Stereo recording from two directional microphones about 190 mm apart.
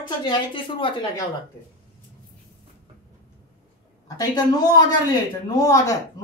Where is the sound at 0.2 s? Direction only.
25° left (ahead or behind).